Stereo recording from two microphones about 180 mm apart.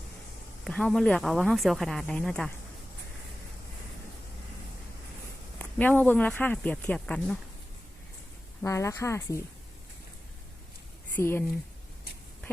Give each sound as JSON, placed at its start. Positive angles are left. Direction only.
{"t": 0.6, "sound": "speech", "side_deg": 0}
{"t": 5.5, "sound": "speech", "side_deg": 10}
{"t": 8.6, "sound": "speech", "side_deg": 15}
{"t": 11.1, "sound": "speech", "side_deg": 10}